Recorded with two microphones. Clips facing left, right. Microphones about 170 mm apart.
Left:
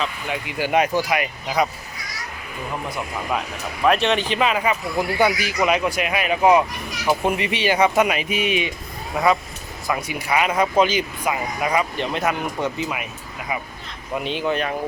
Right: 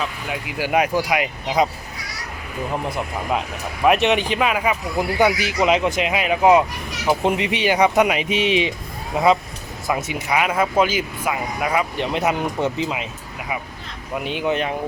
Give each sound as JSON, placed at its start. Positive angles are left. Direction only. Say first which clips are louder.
{"t": 0.0, "sound": "speech", "louder": "even", "side_deg": -5}
{"t": 3.8, "sound": "speech", "louder": "right 2 dB", "side_deg": -15}
{"t": 10.3, "sound": "speech", "louder": "even", "side_deg": -5}
{"t": 11.9, "sound": "speech", "louder": "right 2 dB", "side_deg": -15}
{"t": 14.3, "sound": "speech", "louder": "right 1 dB", "side_deg": -15}